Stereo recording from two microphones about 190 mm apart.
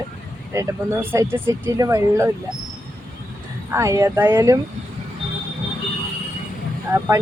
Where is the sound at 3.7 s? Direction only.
15° right (ahead or behind).